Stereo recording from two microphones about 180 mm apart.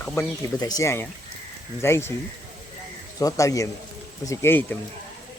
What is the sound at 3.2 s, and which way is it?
A man's voice, 20° left (ahead or behind).